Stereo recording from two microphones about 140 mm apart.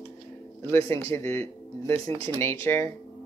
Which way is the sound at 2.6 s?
20° left (ahead or behind).